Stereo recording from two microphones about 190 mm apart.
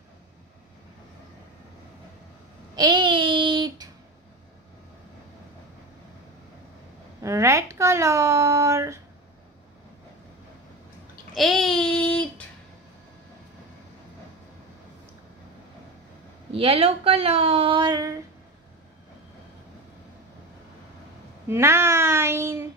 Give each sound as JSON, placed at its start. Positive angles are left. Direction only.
{"t": 2.7, "sound": "child singing", "side_deg": -25}
{"t": 7.2, "sound": "a sound", "side_deg": -15}
{"t": 11.3, "sound": "child singing", "side_deg": 0}
{"t": 16.5, "sound": "speech", "side_deg": -30}
{"t": 21.5, "sound": "child singing", "side_deg": -15}